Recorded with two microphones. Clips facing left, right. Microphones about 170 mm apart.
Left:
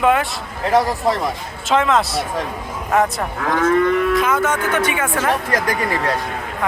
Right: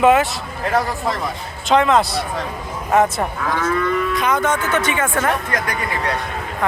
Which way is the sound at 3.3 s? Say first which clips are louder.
Left 3 dB; 55° left (ahead or behind).